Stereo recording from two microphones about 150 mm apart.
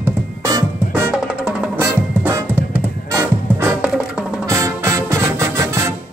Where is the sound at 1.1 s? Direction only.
5° right (ahead or behind).